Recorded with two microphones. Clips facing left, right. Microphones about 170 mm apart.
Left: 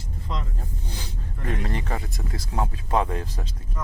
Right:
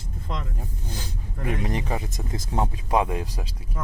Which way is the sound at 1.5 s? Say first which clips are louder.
Right 2 dB; 15° right (ahead or behind).